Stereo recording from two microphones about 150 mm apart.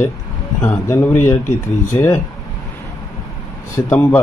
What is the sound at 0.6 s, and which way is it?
Speech, 15° left (ahead or behind).